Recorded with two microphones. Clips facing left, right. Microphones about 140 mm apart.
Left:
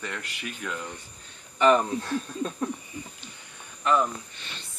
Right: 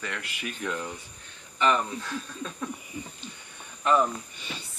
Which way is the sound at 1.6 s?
35° left (ahead or behind).